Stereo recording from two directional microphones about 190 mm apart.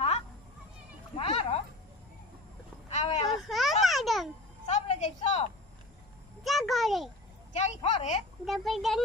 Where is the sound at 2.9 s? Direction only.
35° left (ahead or behind).